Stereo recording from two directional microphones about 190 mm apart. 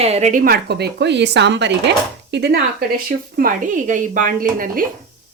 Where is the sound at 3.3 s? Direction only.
45° right (ahead or behind).